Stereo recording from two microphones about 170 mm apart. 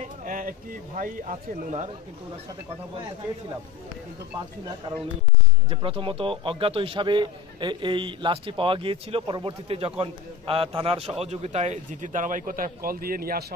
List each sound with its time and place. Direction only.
0.0 s speech: 50° right (ahead or behind)
5.7 s a man's voice: 30° right (ahead or behind); by 13.6 s 65° right (ahead or behind)